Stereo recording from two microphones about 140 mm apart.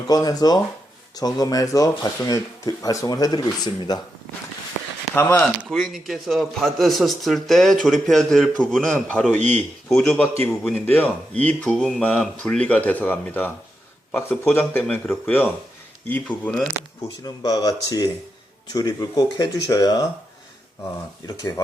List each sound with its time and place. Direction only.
0.1 s speech: 25° left (ahead or behind)
5.1 s speech: 15° left (ahead or behind)
5.6 s speech: centre (ahead or behind)
17.0 s speech: 25° left (ahead or behind)
21.2 s speech: 25° left (ahead or behind)